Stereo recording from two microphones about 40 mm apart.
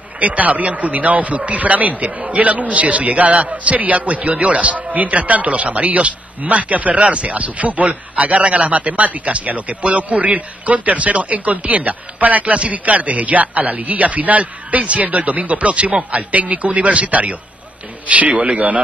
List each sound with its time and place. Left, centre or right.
0.2 s a man's voice: right